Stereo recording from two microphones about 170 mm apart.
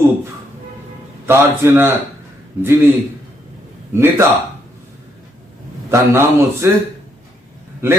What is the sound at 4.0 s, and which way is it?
Speech, 15° right (ahead or behind).